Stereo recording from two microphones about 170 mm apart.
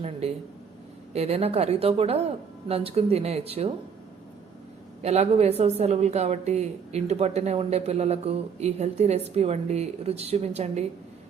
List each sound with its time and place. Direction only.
0.0 s a woman's voice: 40° right (ahead or behind)
5.0 s a woman's voice: 40° right (ahead or behind)